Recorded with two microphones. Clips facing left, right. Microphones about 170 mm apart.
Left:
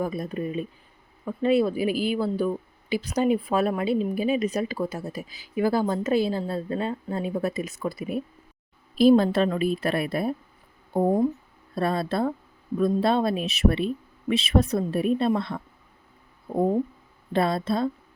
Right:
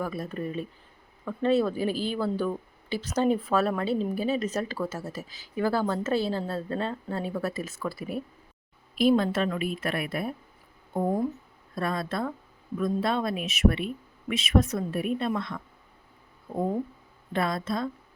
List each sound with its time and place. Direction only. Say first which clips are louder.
0.0 s speech: left 3 dB; 20° left (ahead or behind)
9.0 s a woman's voice: left 5 dB; 35° left (ahead or behind)